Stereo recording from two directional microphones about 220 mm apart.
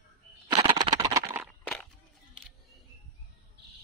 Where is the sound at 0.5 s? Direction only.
20° right (ahead or behind).